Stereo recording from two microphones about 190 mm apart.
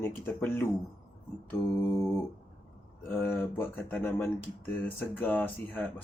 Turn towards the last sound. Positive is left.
turn(degrees=10)  # may be behind; listen again after turning